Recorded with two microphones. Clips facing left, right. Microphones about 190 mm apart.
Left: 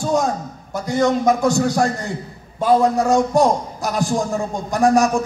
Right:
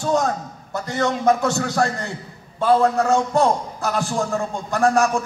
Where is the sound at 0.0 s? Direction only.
15° left (ahead or behind).